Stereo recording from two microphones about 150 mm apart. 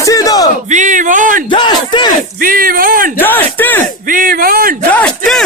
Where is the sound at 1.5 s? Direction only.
30° left (ahead or behind).